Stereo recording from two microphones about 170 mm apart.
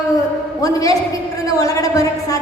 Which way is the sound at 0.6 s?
20° left (ahead or behind).